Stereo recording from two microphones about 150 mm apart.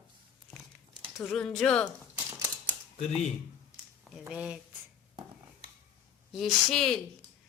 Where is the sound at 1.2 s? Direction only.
5° left (ahead or behind).